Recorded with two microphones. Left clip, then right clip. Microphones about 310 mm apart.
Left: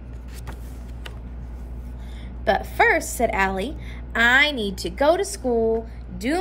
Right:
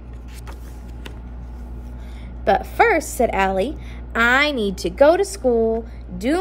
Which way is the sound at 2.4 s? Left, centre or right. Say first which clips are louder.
Right 3 dB; centre.